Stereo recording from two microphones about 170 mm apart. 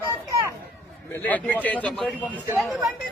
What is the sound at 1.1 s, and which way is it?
A man's voice, 10° left (ahead or behind).